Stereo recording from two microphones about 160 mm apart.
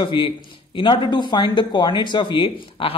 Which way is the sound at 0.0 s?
30° left (ahead or behind).